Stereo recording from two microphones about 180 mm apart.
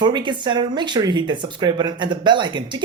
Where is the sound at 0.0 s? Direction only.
25° right (ahead or behind).